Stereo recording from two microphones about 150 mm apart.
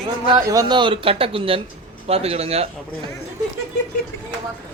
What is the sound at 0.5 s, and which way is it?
Speech, 30° right (ahead or behind).